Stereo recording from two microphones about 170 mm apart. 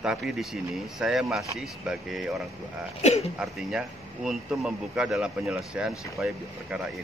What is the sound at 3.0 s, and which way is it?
Speech, 40° left (ahead or behind).